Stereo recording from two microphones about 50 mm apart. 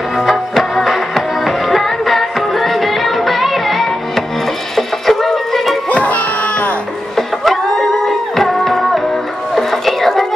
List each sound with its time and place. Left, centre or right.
0.2 s music: centre
5.9 s music: left
7.2 s music: centre